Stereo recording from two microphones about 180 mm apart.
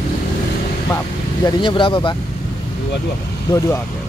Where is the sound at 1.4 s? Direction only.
25° left (ahead or behind).